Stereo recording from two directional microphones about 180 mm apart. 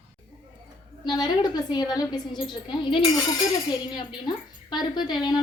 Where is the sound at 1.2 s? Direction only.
25° left (ahead or behind).